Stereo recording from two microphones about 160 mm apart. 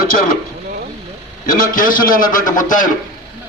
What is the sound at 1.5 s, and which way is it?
A man's voice, 55° left (ahead or behind).